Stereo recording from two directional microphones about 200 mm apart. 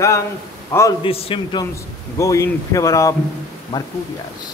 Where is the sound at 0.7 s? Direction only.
10° left (ahead or behind).